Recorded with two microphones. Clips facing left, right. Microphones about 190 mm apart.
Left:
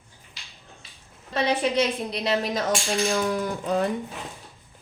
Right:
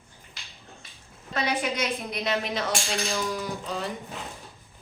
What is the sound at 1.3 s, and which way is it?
A woman's voice, 30° left (ahead or behind).